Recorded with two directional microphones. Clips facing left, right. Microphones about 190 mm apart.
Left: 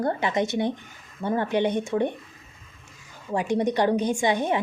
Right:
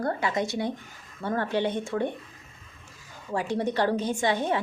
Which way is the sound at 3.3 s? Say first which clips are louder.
Left 3 dB; 15° left (ahead or behind).